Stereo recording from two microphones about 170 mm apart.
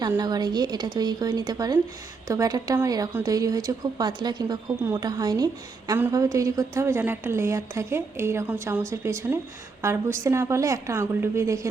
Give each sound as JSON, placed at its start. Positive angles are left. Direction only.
{"t": 0.2, "sound": "a woman's voice", "side_deg": -25}